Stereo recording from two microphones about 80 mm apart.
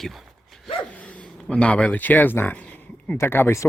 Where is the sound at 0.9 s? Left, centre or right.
Centre.